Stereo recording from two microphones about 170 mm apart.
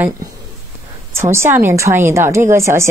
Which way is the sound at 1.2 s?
15° right (ahead or behind).